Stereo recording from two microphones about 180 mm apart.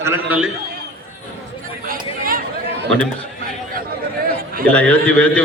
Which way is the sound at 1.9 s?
50° right (ahead or behind).